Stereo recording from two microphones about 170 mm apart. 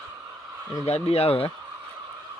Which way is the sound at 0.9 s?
40° left (ahead or behind).